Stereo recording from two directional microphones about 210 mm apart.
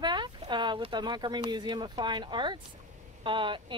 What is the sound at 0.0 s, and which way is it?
Speech, 20° right (ahead or behind).